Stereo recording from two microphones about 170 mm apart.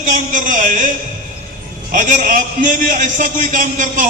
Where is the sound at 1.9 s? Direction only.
50° right (ahead or behind).